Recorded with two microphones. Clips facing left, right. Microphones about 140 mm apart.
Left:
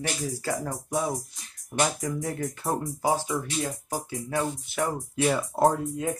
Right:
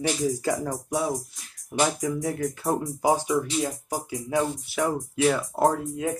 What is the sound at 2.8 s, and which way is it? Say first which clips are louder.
Speech: right 3 dB; 15° right (ahead or behind).